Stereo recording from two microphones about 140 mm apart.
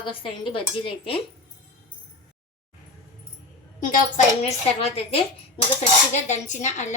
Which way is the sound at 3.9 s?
75° left (ahead or behind).